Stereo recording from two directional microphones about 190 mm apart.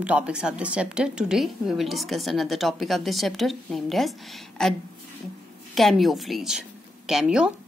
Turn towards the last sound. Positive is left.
turn(degrees=-5)  # may be behind; listen again after turning